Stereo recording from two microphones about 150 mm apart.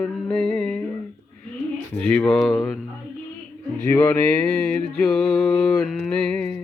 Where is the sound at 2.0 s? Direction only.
5° left (ahead or behind).